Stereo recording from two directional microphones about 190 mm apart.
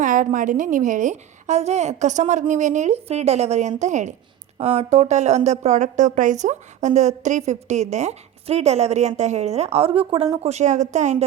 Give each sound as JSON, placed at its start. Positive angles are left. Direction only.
{"t": 0.0, "sound": "a woman's voice", "side_deg": -45}
{"t": 10.4, "sound": "a woman's voice", "side_deg": -35}